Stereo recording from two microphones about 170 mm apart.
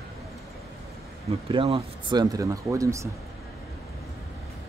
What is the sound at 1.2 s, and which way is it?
Speech, 35° right (ahead or behind).